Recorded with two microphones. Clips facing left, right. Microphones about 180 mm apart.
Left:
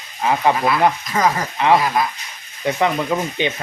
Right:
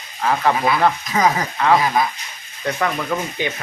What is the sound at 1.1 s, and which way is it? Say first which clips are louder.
Speech: right 1 dB; centre (ahead or behind).